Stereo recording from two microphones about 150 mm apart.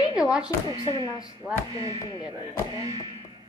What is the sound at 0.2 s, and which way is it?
Speech, 5° right (ahead or behind).